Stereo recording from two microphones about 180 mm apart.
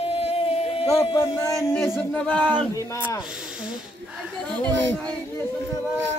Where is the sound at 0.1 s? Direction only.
30° left (ahead or behind).